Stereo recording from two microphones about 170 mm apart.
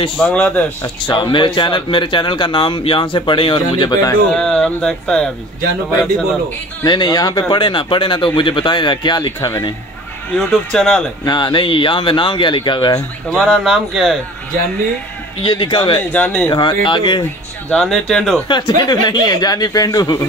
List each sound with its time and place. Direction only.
0.2 s speech: 10° left (ahead or behind)
0.8 s speech: 25° left (ahead or behind)
4.3 s speech: centre (ahead or behind)
6.8 s speech: 25° left (ahead or behind)
10.3 s speech: 5° left (ahead or behind)
11.2 s speech: 25° left (ahead or behind)
13.3 s speech: centre (ahead or behind)
15.4 s speech: 25° left (ahead or behind)
16.1 s speech: 10° left (ahead or behind)
16.4 s speech: 25° left (ahead or behind)
17.6 s speech: 5° left (ahead or behind)
18.5 s speech: 25° left (ahead or behind)